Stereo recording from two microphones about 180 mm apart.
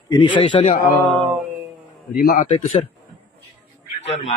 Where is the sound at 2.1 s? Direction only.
50° left (ahead or behind).